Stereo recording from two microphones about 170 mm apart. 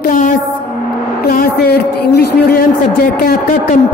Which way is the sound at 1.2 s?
65° left (ahead or behind).